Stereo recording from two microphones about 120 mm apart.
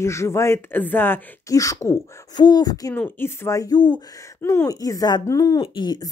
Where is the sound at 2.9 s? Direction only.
15° left (ahead or behind).